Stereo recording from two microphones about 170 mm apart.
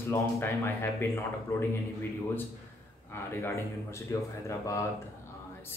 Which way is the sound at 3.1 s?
15° left (ahead or behind).